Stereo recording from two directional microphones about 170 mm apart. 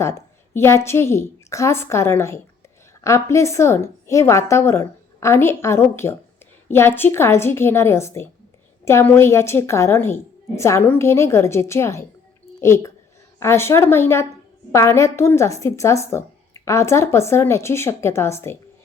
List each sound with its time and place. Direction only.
0.0 s a woman's voice: 15° left (ahead or behind)